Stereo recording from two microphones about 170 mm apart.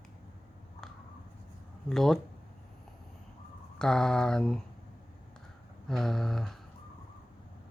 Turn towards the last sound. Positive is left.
turn(degrees=0)  # may be behind; listen again after turning